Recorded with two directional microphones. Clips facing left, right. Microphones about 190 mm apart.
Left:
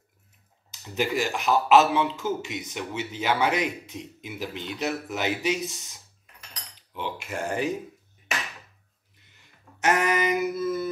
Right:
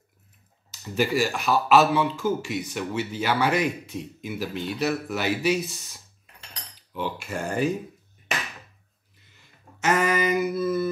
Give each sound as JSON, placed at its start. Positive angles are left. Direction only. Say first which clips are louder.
{"t": 0.7, "sound": "speech", "louder": "right 3 dB", "side_deg": 20}
{"t": 7.0, "sound": "speech", "louder": "right 2 dB", "side_deg": 20}
{"t": 9.8, "sound": "a sound", "louder": "right 1 dB", "side_deg": 15}